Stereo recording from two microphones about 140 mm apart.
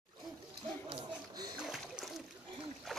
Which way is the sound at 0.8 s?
30° right (ahead or behind).